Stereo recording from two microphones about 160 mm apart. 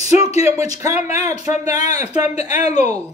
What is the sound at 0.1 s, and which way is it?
Speech, 40° left (ahead or behind).